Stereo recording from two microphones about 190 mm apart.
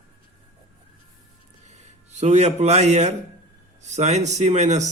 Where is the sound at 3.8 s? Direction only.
35° right (ahead or behind).